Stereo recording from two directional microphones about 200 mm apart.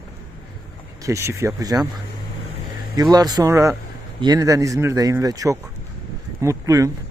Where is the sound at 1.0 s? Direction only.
15° right (ahead or behind).